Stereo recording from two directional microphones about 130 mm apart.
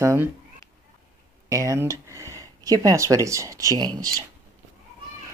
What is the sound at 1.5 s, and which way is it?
Speech, 25° right (ahead or behind).